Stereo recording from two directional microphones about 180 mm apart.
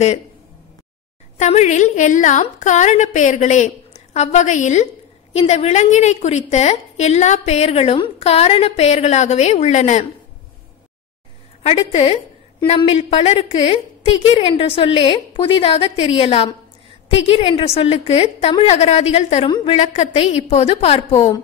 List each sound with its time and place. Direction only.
1.4 s a woman's voice: 40° left (ahead or behind)
11.6 s a woman's voice: 35° left (ahead or behind)